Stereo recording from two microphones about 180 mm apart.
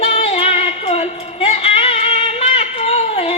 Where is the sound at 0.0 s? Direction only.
30° left (ahead or behind).